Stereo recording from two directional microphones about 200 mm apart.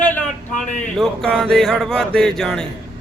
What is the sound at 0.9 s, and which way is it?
Music, centre (ahead or behind).